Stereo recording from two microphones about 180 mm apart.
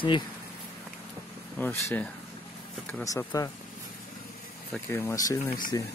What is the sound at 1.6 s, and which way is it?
Speech, 10° left (ahead or behind).